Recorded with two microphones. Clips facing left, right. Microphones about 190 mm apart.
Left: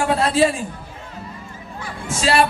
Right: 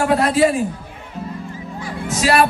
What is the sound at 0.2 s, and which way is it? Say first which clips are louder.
Speech: left 1 dB; 25° left (ahead or behind).